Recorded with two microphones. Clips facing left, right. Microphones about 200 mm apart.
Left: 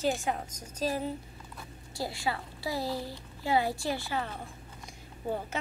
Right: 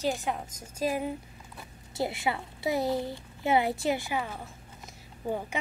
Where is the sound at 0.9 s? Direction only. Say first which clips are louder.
Right 2 dB; 15° right (ahead or behind).